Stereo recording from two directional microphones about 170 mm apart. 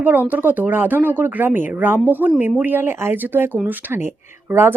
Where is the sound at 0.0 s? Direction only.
10° right (ahead or behind).